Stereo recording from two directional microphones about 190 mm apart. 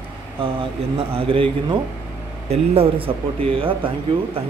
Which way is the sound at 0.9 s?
30° right (ahead or behind).